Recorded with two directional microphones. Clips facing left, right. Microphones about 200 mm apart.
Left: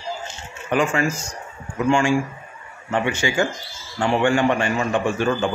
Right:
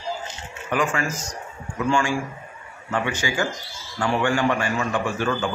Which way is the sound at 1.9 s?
25° left (ahead or behind).